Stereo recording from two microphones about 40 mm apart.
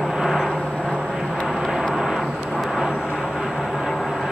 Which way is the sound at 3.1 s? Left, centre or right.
Centre.